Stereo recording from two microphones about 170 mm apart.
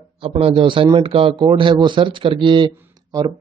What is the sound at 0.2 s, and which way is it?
A man's voice, 35° right (ahead or behind).